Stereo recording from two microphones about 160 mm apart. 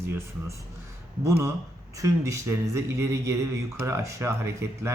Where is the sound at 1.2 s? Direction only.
20° right (ahead or behind).